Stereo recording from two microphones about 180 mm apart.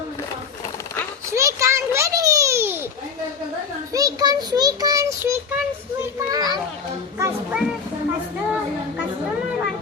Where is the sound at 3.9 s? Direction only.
20° right (ahead or behind).